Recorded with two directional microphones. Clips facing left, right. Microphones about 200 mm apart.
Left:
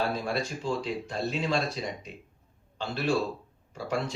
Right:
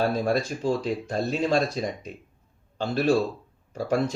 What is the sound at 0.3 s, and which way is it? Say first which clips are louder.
Speech: right 6 dB; 45° right (ahead or behind).